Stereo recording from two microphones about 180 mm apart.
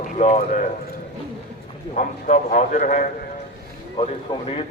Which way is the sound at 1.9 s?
45° left (ahead or behind).